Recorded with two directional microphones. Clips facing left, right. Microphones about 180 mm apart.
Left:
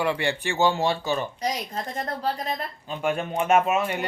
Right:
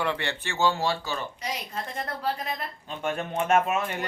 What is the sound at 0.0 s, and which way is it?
Speech, 10° left (ahead or behind).